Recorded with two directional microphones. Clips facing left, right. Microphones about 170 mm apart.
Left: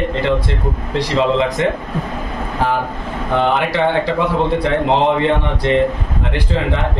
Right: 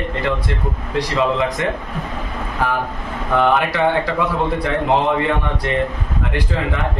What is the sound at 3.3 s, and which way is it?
A man's voice, 25° left (ahead or behind).